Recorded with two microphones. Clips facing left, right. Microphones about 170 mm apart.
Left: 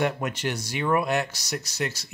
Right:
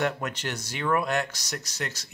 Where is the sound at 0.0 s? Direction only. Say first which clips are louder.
Left 3 dB; 10° left (ahead or behind).